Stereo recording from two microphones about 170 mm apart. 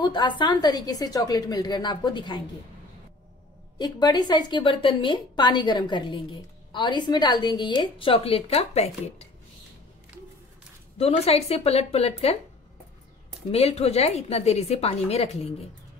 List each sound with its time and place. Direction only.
0.0 s a woman's voice: 25° left (ahead or behind)
3.7 s a woman's voice: 25° left (ahead or behind)
11.0 s a woman's voice: 35° left (ahead or behind)
13.5 s a woman's voice: 40° left (ahead or behind)